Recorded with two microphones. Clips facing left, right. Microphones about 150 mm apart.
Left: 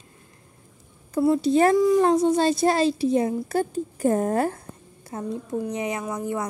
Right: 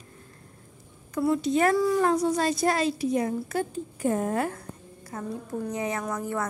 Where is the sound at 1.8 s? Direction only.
20° left (ahead or behind).